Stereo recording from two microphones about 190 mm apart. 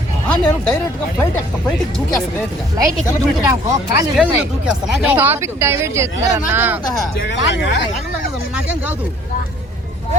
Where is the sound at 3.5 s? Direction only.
15° right (ahead or behind).